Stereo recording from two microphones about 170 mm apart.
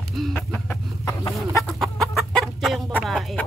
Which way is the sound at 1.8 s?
Centre (ahead or behind).